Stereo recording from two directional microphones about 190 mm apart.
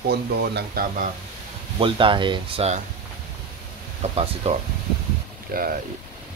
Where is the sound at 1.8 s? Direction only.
25° right (ahead or behind).